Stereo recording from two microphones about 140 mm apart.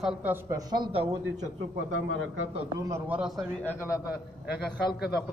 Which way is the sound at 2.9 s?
10° right (ahead or behind).